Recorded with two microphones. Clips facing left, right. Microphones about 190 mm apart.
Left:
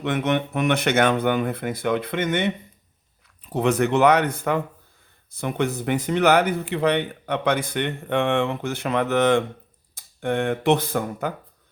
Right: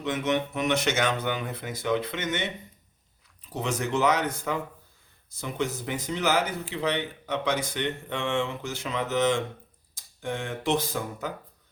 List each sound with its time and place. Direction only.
0.0 s speech: 60° left (ahead or behind)